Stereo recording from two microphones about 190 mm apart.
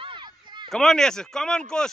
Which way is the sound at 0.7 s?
Centre (ahead or behind).